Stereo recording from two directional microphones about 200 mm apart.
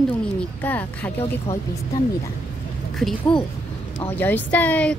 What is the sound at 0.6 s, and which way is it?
Speech, 10° left (ahead or behind).